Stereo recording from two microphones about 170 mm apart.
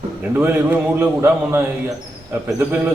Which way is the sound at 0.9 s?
15° right (ahead or behind).